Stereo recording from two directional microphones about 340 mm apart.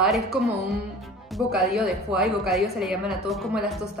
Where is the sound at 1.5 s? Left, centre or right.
Centre.